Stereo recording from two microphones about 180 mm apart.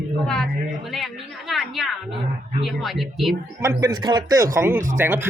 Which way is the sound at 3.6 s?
20° right (ahead or behind).